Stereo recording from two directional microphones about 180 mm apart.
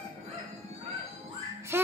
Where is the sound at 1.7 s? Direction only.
15° right (ahead or behind).